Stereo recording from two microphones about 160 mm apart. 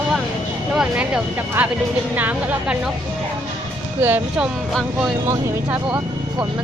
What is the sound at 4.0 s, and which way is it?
Speech, 10° right (ahead or behind).